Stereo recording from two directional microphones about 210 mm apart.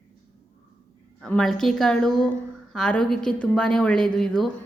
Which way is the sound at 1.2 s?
Centre (ahead or behind).